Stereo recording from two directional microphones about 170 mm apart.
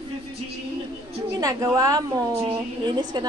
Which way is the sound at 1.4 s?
20° right (ahead or behind).